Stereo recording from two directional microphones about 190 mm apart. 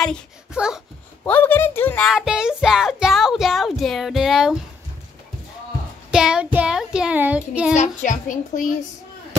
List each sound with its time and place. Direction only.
0.0 s speech: centre (ahead or behind)
1.2 s music: 10° left (ahead or behind)
6.1 s child singing: 5° right (ahead or behind)
7.7 s a child's voice: 40° left (ahead or behind)